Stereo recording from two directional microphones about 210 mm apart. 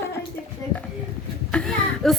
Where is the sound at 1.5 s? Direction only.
5° left (ahead or behind).